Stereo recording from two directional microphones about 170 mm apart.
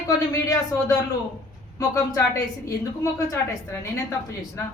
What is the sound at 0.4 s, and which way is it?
Speech, 20° left (ahead or behind).